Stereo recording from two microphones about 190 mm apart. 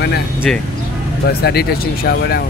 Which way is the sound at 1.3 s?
55° left (ahead or behind).